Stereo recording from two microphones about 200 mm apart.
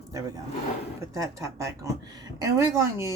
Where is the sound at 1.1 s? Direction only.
15° right (ahead or behind).